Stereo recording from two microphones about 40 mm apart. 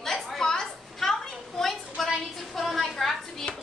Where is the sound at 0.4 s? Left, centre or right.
Centre.